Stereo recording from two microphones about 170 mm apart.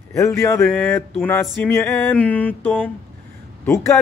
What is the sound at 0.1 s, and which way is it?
Speech, 15° left (ahead or behind).